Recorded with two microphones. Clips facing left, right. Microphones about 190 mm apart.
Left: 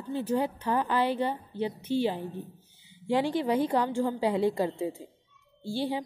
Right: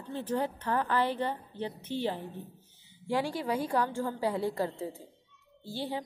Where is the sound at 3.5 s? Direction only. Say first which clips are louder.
Left 4 dB; 20° left (ahead or behind).